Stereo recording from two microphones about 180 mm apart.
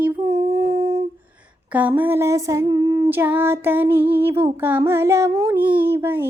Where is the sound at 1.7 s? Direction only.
10° right (ahead or behind).